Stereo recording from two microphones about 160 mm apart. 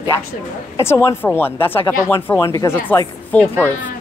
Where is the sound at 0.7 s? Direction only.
15° left (ahead or behind).